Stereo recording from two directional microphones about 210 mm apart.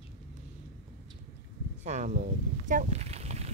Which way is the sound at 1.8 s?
35° right (ahead or behind).